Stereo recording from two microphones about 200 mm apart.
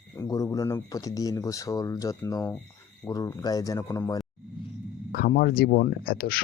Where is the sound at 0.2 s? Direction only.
15° left (ahead or behind).